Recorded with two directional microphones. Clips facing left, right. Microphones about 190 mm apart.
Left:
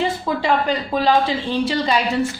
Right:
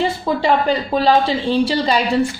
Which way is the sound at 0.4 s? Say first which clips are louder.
Right 3 dB; 30° right (ahead or behind).